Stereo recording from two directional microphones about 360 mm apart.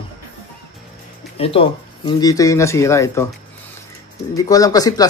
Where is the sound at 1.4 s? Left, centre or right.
Centre.